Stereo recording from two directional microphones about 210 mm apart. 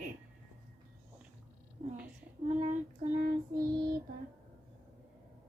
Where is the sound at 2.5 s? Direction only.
35° right (ahead or behind).